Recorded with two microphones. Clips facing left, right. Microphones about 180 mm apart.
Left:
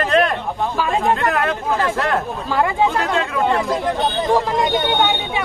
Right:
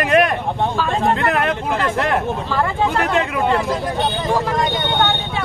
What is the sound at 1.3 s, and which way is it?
Speech, 20° right (ahead or behind).